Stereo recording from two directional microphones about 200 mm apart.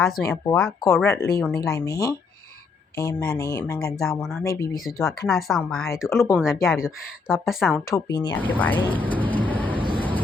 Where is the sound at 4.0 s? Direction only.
Centre (ahead or behind).